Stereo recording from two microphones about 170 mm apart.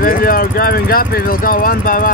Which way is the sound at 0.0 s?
55° left (ahead or behind).